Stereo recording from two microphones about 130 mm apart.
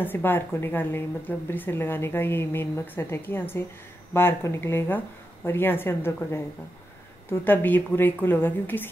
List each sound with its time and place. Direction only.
0.0 s speech: 15° left (ahead or behind)